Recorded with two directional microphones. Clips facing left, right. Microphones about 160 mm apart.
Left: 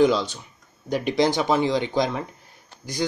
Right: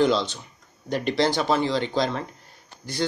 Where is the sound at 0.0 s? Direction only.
10° left (ahead or behind).